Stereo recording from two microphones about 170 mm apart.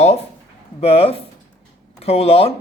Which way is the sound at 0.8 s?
35° left (ahead or behind).